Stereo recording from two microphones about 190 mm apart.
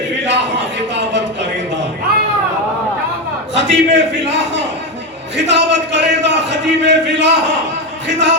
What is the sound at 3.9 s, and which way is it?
A man's voice, 65° right (ahead or behind).